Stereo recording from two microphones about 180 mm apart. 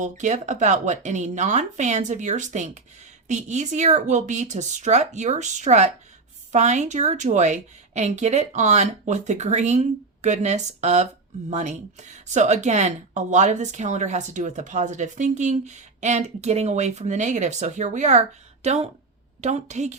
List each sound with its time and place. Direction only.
0.0 s speech: 40° right (ahead or behind)